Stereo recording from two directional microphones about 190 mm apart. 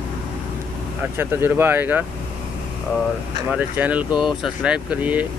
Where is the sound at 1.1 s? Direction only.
10° right (ahead or behind).